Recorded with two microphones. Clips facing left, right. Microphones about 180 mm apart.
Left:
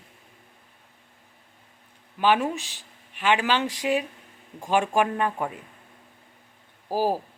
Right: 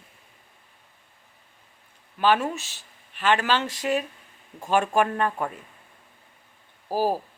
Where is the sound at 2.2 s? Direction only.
15° left (ahead or behind).